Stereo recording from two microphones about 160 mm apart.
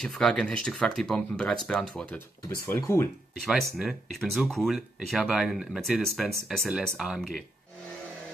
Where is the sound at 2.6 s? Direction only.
15° left (ahead or behind).